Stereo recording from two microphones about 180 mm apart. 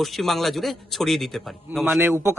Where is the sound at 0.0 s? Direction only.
Centre (ahead or behind).